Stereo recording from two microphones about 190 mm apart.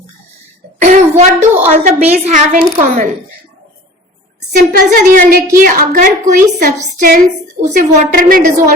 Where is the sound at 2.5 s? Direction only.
40° right (ahead or behind).